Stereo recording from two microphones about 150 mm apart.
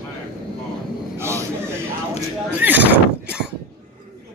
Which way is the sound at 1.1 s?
15° right (ahead or behind).